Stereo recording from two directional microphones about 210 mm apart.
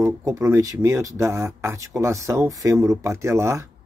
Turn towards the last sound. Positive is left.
turn(degrees=-15)  # may be behind; listen again after turning